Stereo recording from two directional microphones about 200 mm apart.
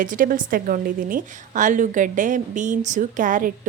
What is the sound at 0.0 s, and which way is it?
A woman's voice, 40° right (ahead or behind).